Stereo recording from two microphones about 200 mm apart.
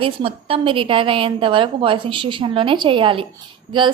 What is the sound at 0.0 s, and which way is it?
Speech, 25° right (ahead or behind).